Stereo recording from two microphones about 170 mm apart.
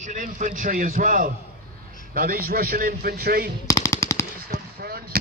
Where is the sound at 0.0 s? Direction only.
50° right (ahead or behind).